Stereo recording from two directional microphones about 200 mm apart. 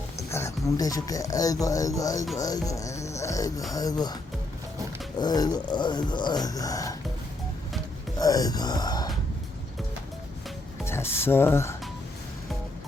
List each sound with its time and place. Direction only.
0.3 s speech: 15° left (ahead or behind)
5.2 s speech: 20° left (ahead or behind)
8.2 s speech: 20° left (ahead or behind)
10.8 s speech: 10° left (ahead or behind)